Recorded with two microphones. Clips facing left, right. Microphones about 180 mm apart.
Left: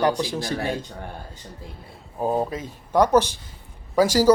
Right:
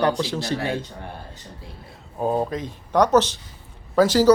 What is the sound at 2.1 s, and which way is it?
Speech, 5° left (ahead or behind).